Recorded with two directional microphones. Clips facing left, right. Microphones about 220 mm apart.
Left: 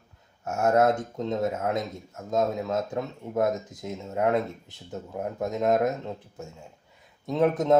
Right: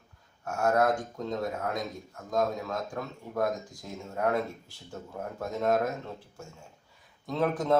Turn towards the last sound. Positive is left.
turn(degrees=20)  # may be behind; listen again after turning